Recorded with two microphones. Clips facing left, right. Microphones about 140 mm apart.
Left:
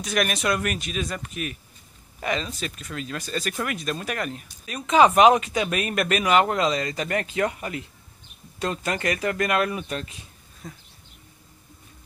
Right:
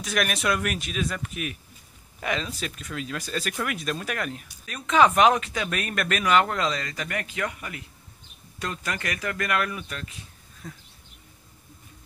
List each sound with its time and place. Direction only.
0.0 s speech: centre (ahead or behind)
4.6 s speech: 15° left (ahead or behind)
10.6 s speech: 10° left (ahead or behind)